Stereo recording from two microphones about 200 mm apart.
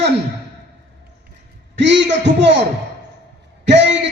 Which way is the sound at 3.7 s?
60° right (ahead or behind).